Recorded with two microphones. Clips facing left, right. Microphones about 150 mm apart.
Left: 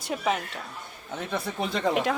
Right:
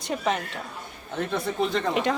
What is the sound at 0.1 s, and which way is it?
Speech, centre (ahead or behind).